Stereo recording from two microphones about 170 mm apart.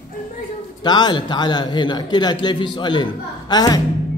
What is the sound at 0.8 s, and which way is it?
A man's voice, 25° left (ahead or behind).